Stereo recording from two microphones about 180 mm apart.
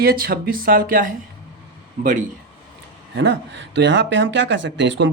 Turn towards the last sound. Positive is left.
turn(degrees=-90)